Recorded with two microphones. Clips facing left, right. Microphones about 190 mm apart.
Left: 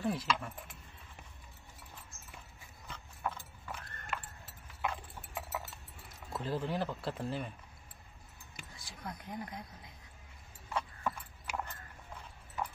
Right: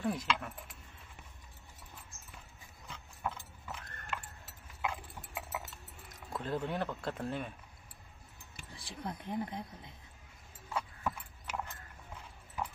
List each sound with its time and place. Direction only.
0.0 s speech: 5° left (ahead or behind)
2.9 s clip-clop: 5° right (ahead or behind)
6.3 s speech: 5° left (ahead or behind)
8.7 s speech: 30° right (ahead or behind)
10.7 s horse: 5° right (ahead or behind)